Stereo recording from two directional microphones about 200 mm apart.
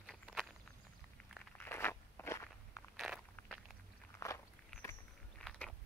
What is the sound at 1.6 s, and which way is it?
Walk, 10° left (ahead or behind).